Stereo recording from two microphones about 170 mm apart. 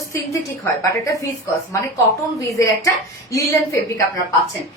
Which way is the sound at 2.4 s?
15° left (ahead or behind).